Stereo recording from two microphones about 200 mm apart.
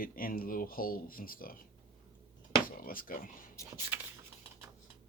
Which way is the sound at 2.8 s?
45° left (ahead or behind).